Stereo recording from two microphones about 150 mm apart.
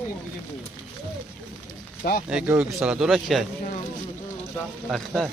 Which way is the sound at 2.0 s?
90° left.